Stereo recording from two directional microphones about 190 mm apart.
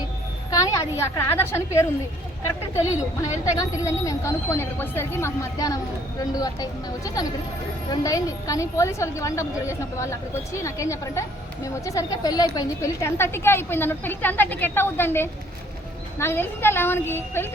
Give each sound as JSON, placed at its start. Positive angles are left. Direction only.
{"t": 0.5, "sound": "a woman's voice", "side_deg": 15}
{"t": 3.2, "sound": "a woman's voice", "side_deg": 15}